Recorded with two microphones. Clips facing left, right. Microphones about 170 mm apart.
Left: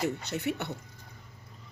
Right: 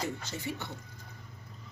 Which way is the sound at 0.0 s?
65° left (ahead or behind).